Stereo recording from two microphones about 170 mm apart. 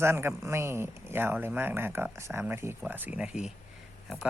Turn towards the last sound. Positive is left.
turn(degrees=-5)  # may be behind; listen again after turning